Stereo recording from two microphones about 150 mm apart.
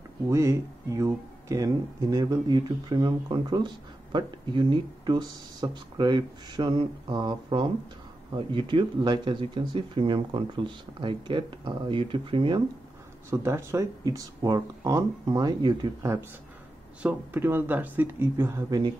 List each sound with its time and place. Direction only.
0.3 s speech: 20° right (ahead or behind); by 12.6 s 35° right (ahead or behind)
13.3 s speech: 15° right (ahead or behind)